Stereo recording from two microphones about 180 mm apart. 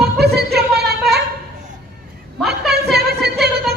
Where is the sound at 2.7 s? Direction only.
65° right (ahead or behind).